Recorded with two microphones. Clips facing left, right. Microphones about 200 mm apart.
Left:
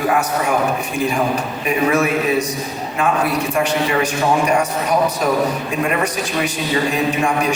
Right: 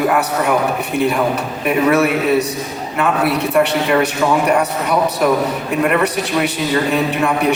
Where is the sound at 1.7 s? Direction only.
60° right (ahead or behind).